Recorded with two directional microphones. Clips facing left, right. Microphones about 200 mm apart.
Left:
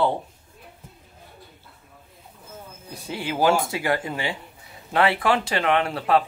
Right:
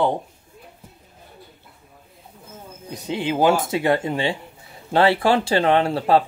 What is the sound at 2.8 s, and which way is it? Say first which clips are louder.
Speech: right 6 dB; 20° right (ahead or behind).